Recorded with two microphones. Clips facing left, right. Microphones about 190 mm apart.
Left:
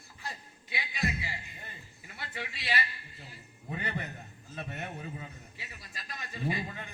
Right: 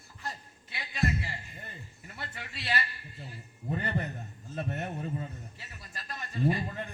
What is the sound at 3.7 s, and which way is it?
A man's voice, 45° right (ahead or behind).